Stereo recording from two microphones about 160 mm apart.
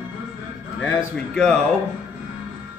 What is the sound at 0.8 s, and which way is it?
Speech, 5° left (ahead or behind).